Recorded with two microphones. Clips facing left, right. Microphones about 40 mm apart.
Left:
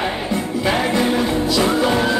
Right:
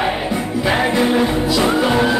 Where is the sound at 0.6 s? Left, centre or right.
Centre.